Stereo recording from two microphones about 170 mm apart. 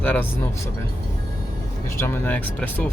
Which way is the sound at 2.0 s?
10° left (ahead or behind).